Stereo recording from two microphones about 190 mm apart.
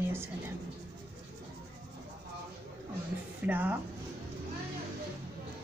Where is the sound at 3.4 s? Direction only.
10° right (ahead or behind).